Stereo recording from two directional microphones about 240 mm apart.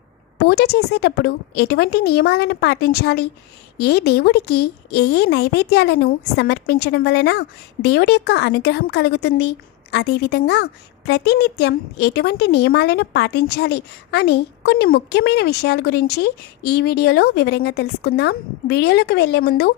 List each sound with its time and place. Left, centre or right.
0.4 s a woman's voice: left